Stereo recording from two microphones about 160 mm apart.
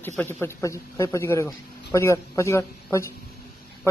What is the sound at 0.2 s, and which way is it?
Speech, 15° left (ahead or behind).